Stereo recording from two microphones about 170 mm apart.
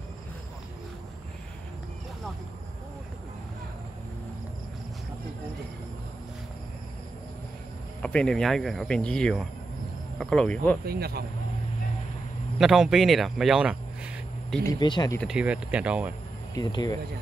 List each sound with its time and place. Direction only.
8.0 s speech: 5° left (ahead or behind)
10.8 s speech: 65° right (ahead or behind)
12.5 s speech: centre (ahead or behind)
14.6 s speech: 25° left (ahead or behind)
15.1 s speech: 5° right (ahead or behind)
16.5 s speech: 25° left (ahead or behind)